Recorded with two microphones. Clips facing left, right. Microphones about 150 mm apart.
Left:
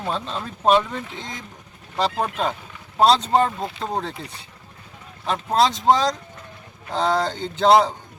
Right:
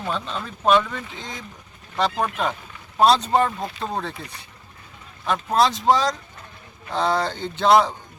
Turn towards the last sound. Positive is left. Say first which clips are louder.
# left 1 dB
turn(degrees=30)  # may be behind; listen again after turning